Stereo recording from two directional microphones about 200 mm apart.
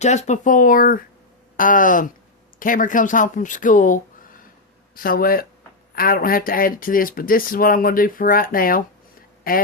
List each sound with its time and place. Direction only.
0.0 s speech: 35° left (ahead or behind)